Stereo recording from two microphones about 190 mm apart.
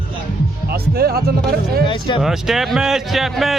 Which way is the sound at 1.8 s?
25° left (ahead or behind).